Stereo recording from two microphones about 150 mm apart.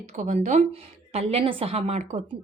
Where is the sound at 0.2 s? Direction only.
50° right (ahead or behind).